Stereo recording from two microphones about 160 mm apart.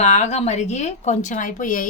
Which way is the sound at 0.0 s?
45° left (ahead or behind).